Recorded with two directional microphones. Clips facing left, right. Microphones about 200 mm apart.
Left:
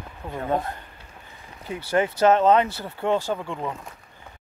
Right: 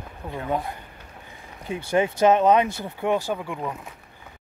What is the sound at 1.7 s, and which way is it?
Speech, 20° right (ahead or behind).